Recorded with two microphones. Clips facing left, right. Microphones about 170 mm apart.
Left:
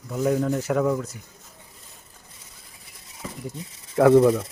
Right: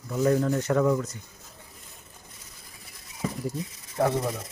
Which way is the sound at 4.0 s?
90° left.